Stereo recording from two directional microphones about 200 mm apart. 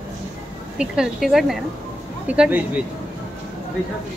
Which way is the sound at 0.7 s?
5° right (ahead or behind).